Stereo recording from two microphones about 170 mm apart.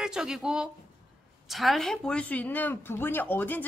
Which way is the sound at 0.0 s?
5° right (ahead or behind).